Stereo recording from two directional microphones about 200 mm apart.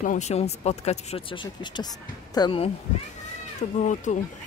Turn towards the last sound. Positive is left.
turn(degrees=40)  # may be behind; listen again after turning